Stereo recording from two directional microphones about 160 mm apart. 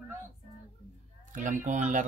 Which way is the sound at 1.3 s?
55° right (ahead or behind).